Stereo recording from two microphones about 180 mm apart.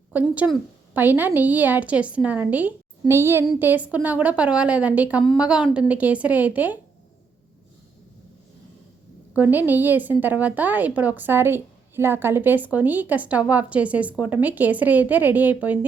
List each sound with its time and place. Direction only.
0.1 s a woman's voice: 10° right (ahead or behind)
9.3 s a woman's voice: 10° right (ahead or behind)